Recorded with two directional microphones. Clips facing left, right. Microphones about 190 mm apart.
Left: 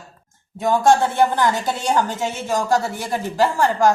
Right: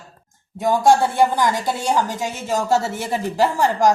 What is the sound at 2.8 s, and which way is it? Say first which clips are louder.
A woman's voice: right 1 dB; 20° right (ahead or behind).